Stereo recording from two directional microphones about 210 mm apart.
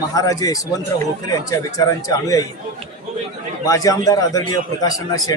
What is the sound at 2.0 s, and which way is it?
Speech, 15° left (ahead or behind).